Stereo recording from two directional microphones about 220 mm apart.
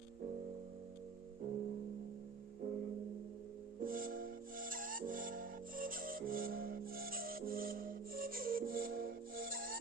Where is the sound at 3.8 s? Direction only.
40° right (ahead or behind).